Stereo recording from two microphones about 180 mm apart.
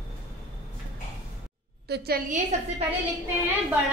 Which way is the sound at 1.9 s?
65° right (ahead or behind).